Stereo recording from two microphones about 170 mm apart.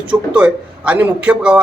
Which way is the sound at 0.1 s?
5° right (ahead or behind).